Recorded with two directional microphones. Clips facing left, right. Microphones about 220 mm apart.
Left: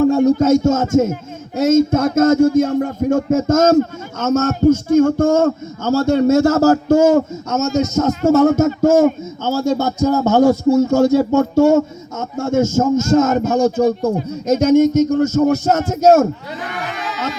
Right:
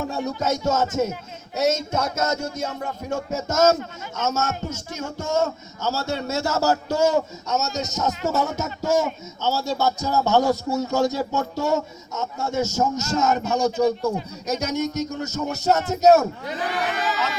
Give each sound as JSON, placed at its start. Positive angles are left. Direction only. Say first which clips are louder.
{"t": 0.0, "sound": "speech", "louder": "left 14 dB", "side_deg": 50}
{"t": 16.9, "sound": "crowd", "louder": "right 1 dB", "side_deg": 0}